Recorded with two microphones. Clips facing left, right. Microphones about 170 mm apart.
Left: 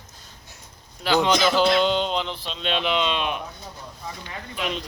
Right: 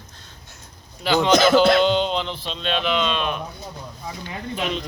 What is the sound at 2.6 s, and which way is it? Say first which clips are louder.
Speech: right 1 dB; 20° left (ahead or behind).